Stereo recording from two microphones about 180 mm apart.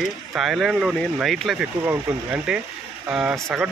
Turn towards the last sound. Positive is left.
turn(degrees=-5)  # may be behind; listen again after turning